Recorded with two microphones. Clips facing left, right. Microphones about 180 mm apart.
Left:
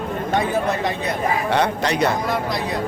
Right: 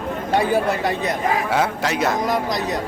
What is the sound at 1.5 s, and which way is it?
Speech, 5° right (ahead or behind).